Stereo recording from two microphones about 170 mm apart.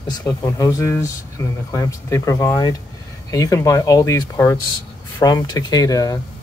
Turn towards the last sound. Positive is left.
turn(degrees=20)  # may be behind; listen again after turning